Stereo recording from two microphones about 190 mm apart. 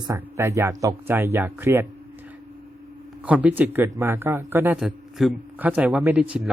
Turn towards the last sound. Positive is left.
turn(degrees=-5)  # may be behind; listen again after turning